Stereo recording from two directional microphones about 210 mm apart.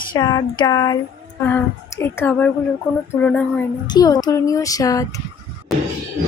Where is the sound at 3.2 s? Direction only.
5° left (ahead or behind).